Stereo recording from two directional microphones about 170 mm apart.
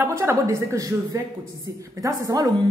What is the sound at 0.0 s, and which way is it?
A woman's voice, 15° right (ahead or behind).